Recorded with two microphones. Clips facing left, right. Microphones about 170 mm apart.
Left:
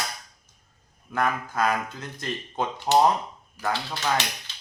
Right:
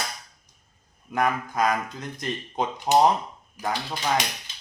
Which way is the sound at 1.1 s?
15° right (ahead or behind).